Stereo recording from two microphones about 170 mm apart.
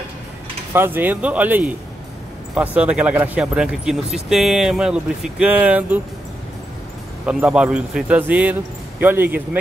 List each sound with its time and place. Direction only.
0.7 s speech: 10° right (ahead or behind)
7.2 s speech: 5° right (ahead or behind)